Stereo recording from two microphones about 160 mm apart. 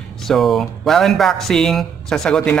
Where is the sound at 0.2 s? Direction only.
Centre (ahead or behind).